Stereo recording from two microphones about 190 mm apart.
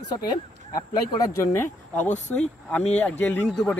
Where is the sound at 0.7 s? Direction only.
20° left (ahead or behind).